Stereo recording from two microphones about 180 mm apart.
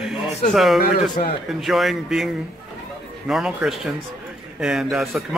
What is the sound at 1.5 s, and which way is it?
Speech, centre (ahead or behind).